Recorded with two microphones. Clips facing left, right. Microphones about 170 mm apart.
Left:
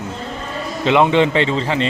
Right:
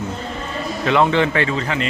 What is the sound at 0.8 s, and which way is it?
A man's voice, 20° left (ahead or behind).